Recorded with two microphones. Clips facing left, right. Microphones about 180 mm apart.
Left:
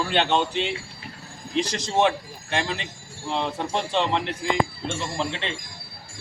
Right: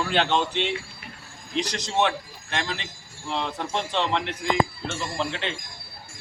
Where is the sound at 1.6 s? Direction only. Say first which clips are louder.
Left 2 dB; 25° left (ahead or behind).